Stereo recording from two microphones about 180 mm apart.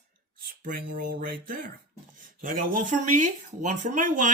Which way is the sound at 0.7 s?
50° right (ahead or behind).